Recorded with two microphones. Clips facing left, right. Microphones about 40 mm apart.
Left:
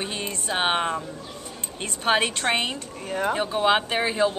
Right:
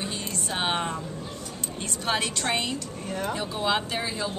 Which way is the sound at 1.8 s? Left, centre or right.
Left.